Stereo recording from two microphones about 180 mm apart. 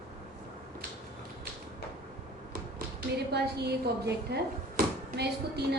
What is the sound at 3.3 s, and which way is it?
A woman's voice, 65° right (ahead or behind).